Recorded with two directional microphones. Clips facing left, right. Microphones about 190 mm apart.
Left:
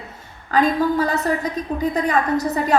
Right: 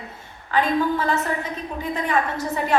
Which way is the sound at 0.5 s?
40° left (ahead or behind).